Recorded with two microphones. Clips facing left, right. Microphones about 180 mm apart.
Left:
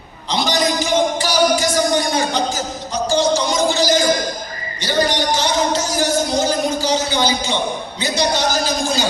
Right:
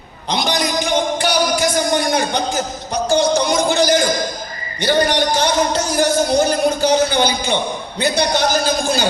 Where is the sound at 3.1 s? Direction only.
60° right (ahead or behind).